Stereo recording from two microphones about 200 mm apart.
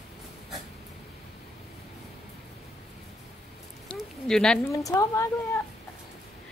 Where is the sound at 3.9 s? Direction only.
5° left (ahead or behind).